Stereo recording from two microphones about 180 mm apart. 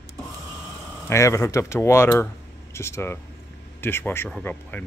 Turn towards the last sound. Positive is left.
turn(degrees=5)  # may be behind; listen again after turning